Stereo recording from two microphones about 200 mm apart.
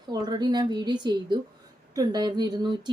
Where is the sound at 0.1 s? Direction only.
20° right (ahead or behind).